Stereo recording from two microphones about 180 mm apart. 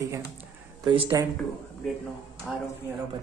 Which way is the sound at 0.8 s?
30° right (ahead or behind).